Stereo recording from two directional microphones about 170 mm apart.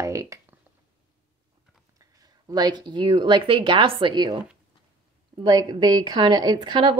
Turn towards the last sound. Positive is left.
turn(degrees=-30)  # may be behind; listen again after turning